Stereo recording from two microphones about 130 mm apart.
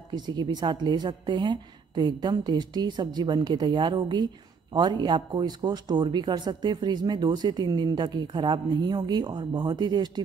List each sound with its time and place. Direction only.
0.1 s speech: 35° right (ahead or behind)